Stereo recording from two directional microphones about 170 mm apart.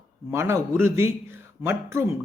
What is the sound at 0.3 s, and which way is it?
A man's voice, 15° right (ahead or behind).